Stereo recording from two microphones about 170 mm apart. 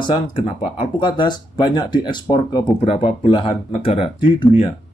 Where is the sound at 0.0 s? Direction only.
25° left (ahead or behind).